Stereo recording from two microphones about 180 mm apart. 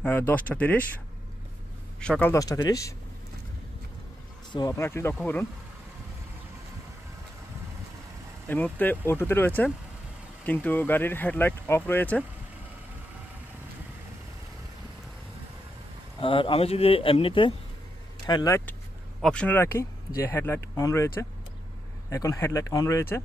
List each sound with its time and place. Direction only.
0.0 s speech: 10° left (ahead or behind)
2.0 s speech: 5° left (ahead or behind)
4.5 s speech: 20° left (ahead or behind)
8.5 s speech: 10° left (ahead or behind)
16.2 s speech: 30° left (ahead or behind)
19.2 s speech: 5° left (ahead or behind)